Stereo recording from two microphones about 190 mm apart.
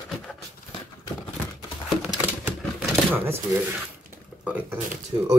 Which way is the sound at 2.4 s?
10° right (ahead or behind).